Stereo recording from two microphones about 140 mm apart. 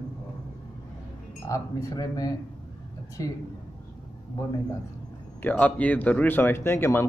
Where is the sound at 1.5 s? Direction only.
20° left (ahead or behind).